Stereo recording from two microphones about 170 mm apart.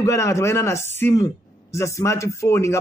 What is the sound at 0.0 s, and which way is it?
A man's voice, 15° left (ahead or behind).